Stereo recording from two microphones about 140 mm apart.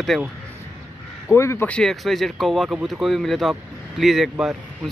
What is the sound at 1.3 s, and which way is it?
Speech, 20° left (ahead or behind).